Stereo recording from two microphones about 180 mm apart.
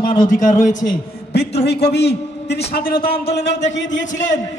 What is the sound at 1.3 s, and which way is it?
A man's voice, 70° left (ahead or behind).